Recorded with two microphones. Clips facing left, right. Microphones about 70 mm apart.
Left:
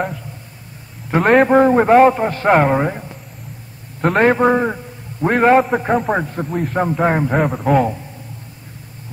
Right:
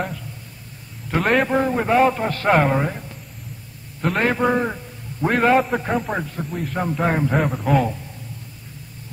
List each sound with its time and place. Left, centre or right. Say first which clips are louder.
1.2 s speech: left 8 dB; left
2.1 s speech: left 4 dB; left
4.0 s speech: left 6 dB; left
5.2 s speech: left 4 dB; left